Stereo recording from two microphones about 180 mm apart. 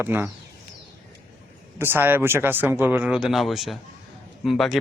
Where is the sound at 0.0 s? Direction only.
10° right (ahead or behind).